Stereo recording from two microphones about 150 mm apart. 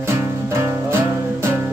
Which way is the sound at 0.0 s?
20° right (ahead or behind).